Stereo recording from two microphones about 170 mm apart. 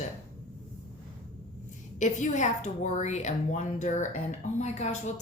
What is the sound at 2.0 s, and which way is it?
A woman's voice, 45° left (ahead or behind).